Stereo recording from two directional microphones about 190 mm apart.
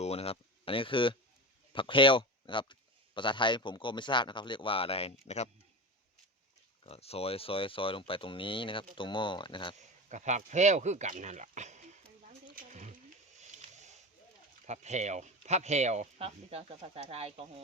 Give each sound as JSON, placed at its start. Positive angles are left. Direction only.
{"t": 0.0, "sound": "speech", "side_deg": 30}
{"t": 6.8, "sound": "speech", "side_deg": 30}
{"t": 9.7, "sound": "speech", "side_deg": -40}
{"t": 12.5, "sound": "wild animals", "side_deg": -40}
{"t": 13.4, "sound": "a sound", "side_deg": -40}
{"t": 14.7, "sound": "speech", "side_deg": -35}